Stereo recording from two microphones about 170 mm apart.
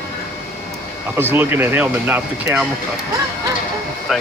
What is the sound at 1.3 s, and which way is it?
Speech, 10° right (ahead or behind).